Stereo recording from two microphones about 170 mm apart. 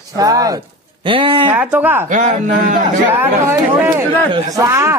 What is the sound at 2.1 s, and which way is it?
Speech, 50° right (ahead or behind).